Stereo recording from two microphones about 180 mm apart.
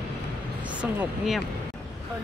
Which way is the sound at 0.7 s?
5° right (ahead or behind).